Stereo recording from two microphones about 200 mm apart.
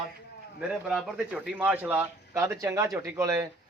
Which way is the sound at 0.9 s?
5° right (ahead or behind).